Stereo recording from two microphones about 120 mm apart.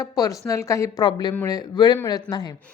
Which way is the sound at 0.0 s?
30° left (ahead or behind).